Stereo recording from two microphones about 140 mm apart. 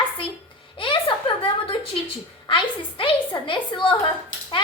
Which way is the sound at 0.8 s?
40° left (ahead or behind).